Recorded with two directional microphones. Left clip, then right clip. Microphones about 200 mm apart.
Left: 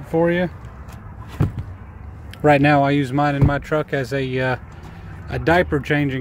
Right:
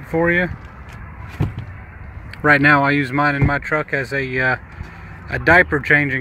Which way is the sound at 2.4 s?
15° left (ahead or behind).